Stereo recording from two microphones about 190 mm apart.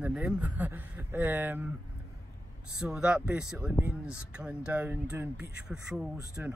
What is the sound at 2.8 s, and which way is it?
Speech, 5° right (ahead or behind).